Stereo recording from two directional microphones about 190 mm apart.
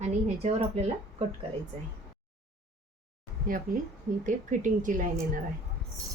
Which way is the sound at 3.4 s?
45° right (ahead or behind).